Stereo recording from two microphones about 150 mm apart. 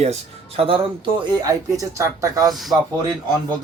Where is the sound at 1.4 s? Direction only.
20° right (ahead or behind).